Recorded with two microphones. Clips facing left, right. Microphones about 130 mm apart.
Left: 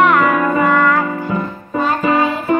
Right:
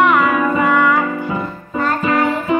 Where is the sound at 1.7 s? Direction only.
20° left (ahead or behind).